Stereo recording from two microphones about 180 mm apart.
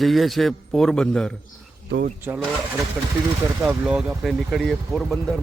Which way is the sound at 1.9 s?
65° right (ahead or behind).